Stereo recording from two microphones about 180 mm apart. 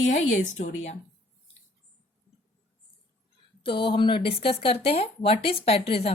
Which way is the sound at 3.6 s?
30° left (ahead or behind).